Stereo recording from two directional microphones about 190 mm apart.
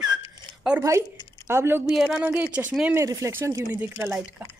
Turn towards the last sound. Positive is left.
turn(degrees=-10)  # may be behind; listen again after turning